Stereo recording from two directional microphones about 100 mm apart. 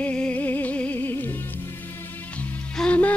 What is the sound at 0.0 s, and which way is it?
Music, 15° left (ahead or behind).